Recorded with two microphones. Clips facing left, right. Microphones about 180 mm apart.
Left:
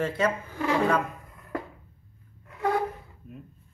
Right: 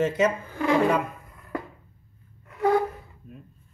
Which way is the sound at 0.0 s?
20° right (ahead or behind).